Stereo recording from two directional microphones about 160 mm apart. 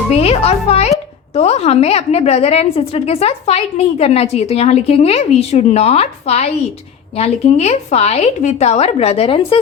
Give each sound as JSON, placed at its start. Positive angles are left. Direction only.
{"t": 0.1, "sound": "a woman's voice", "side_deg": 40}